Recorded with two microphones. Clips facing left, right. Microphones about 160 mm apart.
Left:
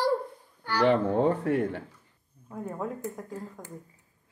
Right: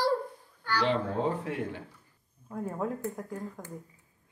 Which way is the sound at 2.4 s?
Centre (ahead or behind).